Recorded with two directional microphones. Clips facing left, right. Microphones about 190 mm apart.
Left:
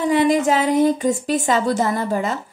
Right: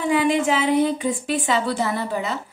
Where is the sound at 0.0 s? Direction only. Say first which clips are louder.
Left 3 dB; 40° left (ahead or behind).